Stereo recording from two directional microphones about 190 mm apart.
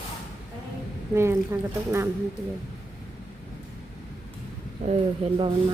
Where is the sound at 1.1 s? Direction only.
15° right (ahead or behind).